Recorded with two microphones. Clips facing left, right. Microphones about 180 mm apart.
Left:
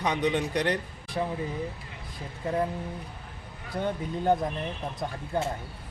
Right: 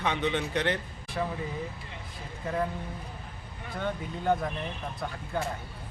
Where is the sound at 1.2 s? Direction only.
25° left (ahead or behind).